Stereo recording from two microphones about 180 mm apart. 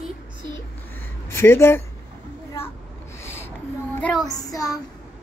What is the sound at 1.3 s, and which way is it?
Speech, 15° left (ahead or behind).